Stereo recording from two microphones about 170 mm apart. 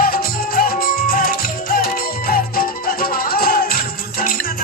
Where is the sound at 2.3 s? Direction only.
60° left (ahead or behind).